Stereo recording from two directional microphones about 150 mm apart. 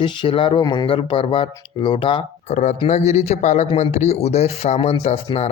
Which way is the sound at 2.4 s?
50° left (ahead or behind).